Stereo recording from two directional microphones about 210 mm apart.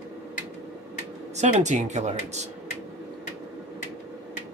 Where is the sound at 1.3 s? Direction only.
35° right (ahead or behind).